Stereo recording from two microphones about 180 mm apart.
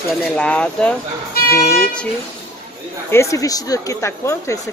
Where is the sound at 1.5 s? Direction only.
55° left (ahead or behind).